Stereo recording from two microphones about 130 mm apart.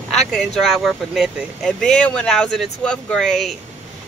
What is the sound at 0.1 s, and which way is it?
Speech, centre (ahead or behind).